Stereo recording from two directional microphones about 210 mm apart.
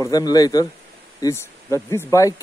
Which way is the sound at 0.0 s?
20° left (ahead or behind).